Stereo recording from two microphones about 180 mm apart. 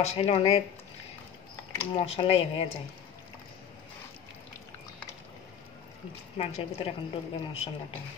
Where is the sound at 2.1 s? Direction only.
30° left (ahead or behind).